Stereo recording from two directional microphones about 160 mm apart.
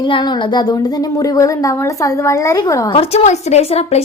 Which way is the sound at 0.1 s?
25° left (ahead or behind).